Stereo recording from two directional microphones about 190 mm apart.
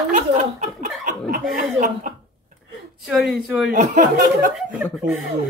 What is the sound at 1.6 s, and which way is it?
Speech, 40° right (ahead or behind).